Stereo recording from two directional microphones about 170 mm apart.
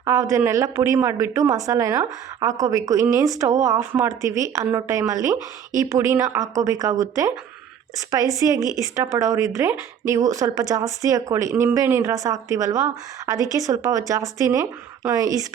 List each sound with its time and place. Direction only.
0.0 s a woman's voice: 20° right (ahead or behind)
8.4 s a woman's voice: 20° right (ahead or behind)